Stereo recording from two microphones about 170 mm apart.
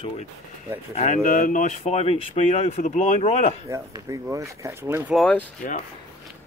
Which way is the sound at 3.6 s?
20° right (ahead or behind).